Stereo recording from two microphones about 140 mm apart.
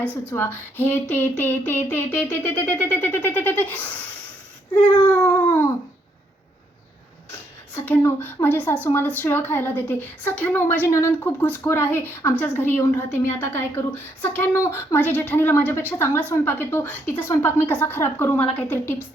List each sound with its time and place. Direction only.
0.0 s a woman's voice: 15° left (ahead or behind)
5.0 s a woman's voice: 15° left (ahead or behind)
7.7 s a woman's voice: 15° left (ahead or behind)